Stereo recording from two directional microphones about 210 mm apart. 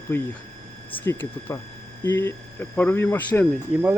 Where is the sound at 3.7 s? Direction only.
10° right (ahead or behind).